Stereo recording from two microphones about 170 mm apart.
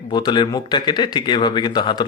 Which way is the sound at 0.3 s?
25° left (ahead or behind).